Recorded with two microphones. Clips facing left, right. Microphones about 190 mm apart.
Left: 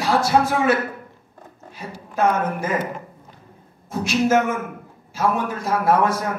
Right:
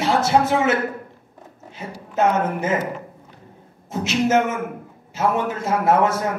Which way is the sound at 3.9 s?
20° right (ahead or behind).